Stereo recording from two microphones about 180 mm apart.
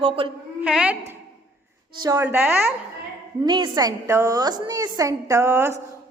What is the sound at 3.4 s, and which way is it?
A woman's voice, 25° right (ahead or behind).